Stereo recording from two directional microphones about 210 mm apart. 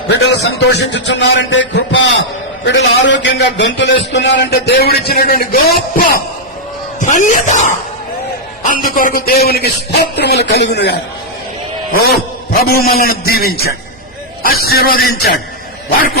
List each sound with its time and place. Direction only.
0.1 s a man's voice: 55° left (ahead or behind)
12.5 s a man's voice: 45° left (ahead or behind)